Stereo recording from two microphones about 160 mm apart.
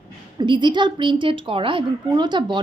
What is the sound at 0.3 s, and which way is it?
A woman's voice, 30° right (ahead or behind).